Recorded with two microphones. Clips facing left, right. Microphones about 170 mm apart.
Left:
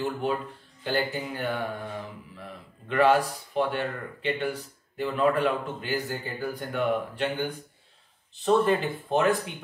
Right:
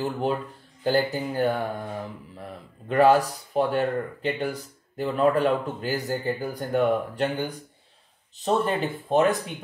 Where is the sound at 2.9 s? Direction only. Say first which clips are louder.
Right 3 dB; 40° right (ahead or behind).